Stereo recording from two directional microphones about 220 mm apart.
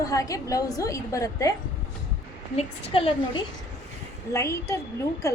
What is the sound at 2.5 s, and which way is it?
Speech, 25° left (ahead or behind).